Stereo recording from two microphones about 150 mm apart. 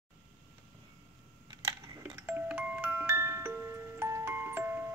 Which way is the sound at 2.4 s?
10° right (ahead or behind).